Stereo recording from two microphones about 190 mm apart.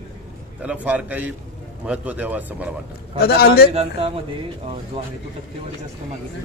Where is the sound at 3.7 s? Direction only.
35° right (ahead or behind).